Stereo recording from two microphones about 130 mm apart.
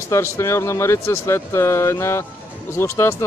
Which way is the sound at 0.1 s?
20° left (ahead or behind).